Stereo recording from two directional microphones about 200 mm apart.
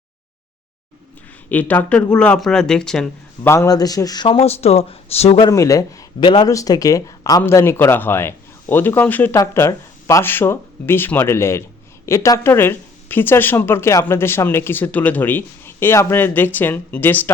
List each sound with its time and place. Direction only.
1.5 s speech: 10° left (ahead or behind)
3.5 s speech: 15° left (ahead or behind); by 5.5 s 30° left (ahead or behind)
5.5 s speech: 15° left (ahead or behind)